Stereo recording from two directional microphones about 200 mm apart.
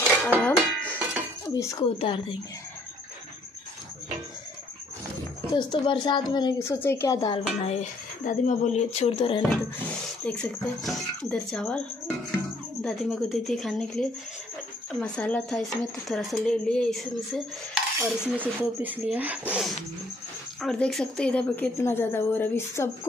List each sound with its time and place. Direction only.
0.4 s a sound: 5° left (ahead or behind)
1.5 s speech: 15° left (ahead or behind)
5.5 s speech: 25° left (ahead or behind)
7.6 s speech: 35° left (ahead or behind)
9.5 s speech: 5° left (ahead or behind)
12.8 s speech: centre (ahead or behind)
17.7 s dishes: 5° right (ahead or behind)
20.6 s a woman's voice: 5° left (ahead or behind)